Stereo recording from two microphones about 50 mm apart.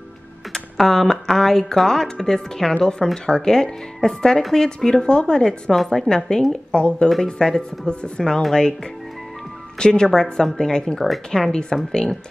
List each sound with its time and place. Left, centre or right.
0.5 s speech: centre
9.8 s speech: centre
11.1 s speech: centre
11.5 s speech: centre